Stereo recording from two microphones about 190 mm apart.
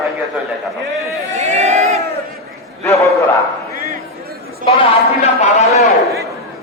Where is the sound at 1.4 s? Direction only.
35° right (ahead or behind).